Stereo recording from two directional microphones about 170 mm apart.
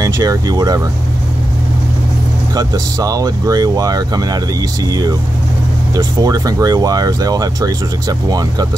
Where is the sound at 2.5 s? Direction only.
20° right (ahead or behind).